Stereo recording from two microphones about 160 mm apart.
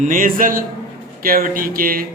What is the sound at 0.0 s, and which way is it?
Speech, 55° right (ahead or behind).